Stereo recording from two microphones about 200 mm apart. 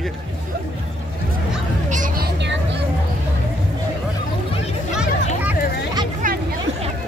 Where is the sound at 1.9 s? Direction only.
40° right (ahead or behind).